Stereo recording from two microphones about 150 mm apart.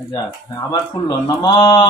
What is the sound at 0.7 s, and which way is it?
A man's voice, 30° left (ahead or behind).